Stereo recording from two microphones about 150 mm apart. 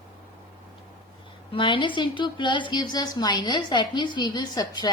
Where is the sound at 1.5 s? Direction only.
35° left (ahead or behind).